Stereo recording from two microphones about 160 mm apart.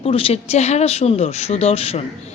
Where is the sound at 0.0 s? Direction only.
35° left (ahead or behind).